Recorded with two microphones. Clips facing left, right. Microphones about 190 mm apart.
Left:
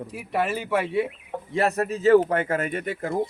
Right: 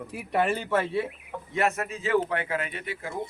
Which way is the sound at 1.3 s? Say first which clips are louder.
Left 3 dB; 35° left (ahead or behind).